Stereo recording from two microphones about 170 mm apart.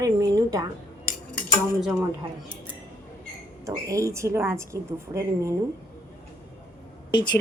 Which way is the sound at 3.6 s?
20° right (ahead or behind).